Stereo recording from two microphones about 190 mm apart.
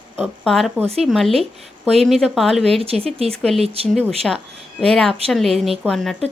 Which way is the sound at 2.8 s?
30° right (ahead or behind).